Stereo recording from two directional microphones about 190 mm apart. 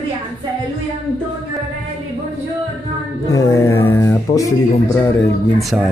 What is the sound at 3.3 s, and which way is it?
Speech, 15° left (ahead or behind).